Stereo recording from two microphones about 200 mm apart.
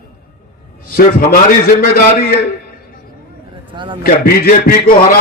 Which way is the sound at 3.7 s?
25° right (ahead or behind).